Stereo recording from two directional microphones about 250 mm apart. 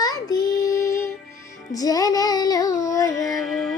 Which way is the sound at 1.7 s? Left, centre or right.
Centre.